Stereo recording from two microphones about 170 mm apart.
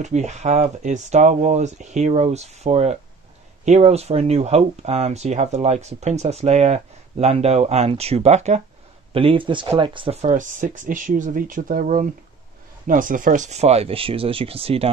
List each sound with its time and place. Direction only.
0.0 s speech: 45° right (ahead or behind)
10.3 s speech: 50° right (ahead or behind)